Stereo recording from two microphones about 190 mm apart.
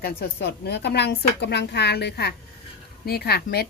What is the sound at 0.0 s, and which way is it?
Speech, 55° left (ahead or behind).